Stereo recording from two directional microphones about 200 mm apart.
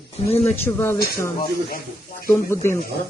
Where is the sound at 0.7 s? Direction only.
10° left (ahead or behind).